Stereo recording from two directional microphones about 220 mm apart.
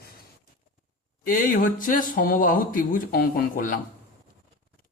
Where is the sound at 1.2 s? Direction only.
40° left (ahead or behind).